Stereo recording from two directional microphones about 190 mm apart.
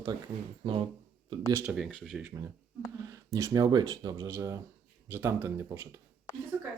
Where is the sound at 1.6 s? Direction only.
Centre (ahead or behind).